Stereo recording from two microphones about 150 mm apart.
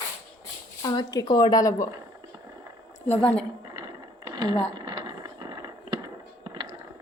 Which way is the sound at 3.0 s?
10° left (ahead or behind).